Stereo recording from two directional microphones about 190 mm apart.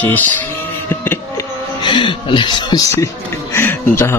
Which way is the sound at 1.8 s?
25° left (ahead or behind).